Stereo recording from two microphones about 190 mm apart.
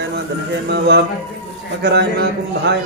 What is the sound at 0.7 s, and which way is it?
Speech, 65° right (ahead or behind).